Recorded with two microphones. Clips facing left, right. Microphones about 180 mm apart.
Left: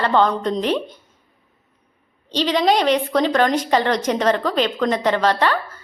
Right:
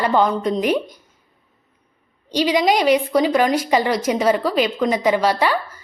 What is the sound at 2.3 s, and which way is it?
A woman's voice, 10° right (ahead or behind).